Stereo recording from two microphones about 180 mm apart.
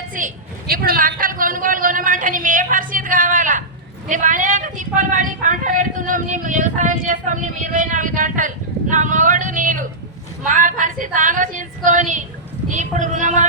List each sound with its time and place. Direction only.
0.1 s speech: 45° right (ahead or behind)
0.7 s a sound: 55° right (ahead or behind)
4.1 s speech: 45° right (ahead or behind)